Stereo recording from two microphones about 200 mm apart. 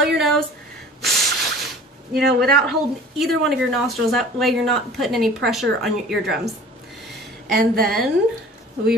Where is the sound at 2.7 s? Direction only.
Centre (ahead or behind).